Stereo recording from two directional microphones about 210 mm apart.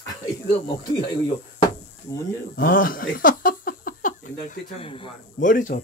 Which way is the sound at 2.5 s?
45° left (ahead or behind).